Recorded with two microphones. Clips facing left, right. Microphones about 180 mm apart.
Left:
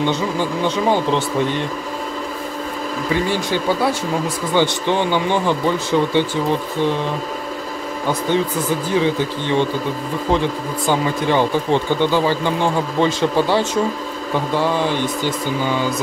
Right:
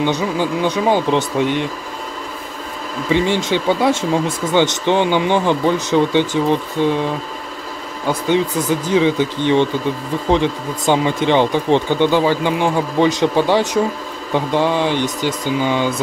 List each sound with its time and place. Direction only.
0.0 s speech: 15° right (ahead or behind)
3.1 s speech: 20° right (ahead or behind)
8.1 s speech: 20° right (ahead or behind)